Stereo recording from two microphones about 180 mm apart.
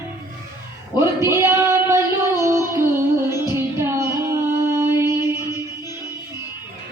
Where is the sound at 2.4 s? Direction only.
15° right (ahead or behind).